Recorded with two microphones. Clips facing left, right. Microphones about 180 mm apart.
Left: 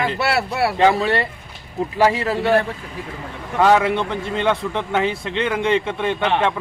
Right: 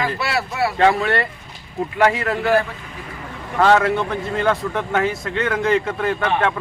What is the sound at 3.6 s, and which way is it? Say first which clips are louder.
Speech: even; 10° left (ahead or behind).